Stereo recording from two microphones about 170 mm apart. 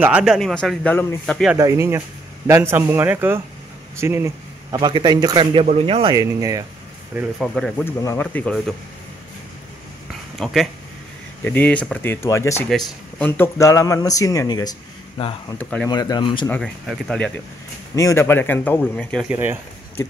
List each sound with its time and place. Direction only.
0.0 s a man's voice: 5° right (ahead or behind)
1.6 s speech: 15° right (ahead or behind); by 6.1 s 35° right (ahead or behind)
6.1 s speech: 20° right (ahead or behind)
7.2 s a man's voice: centre (ahead or behind)
7.8 s a man's voice: 15° left (ahead or behind)
10.4 s a man's voice: centre (ahead or behind); by 12.6 s 15° left (ahead or behind)
12.6 s speech: centre (ahead or behind)
13.4 s speech: 15° left (ahead or behind)
15.4 s a man's voice: 10° left (ahead or behind)
15.9 s speech: 25° left (ahead or behind)
16.4 s a man's voice: 5° left (ahead or behind)
17.9 s a man's voice: 15° left (ahead or behind)
19.2 s speech: 15° right (ahead or behind)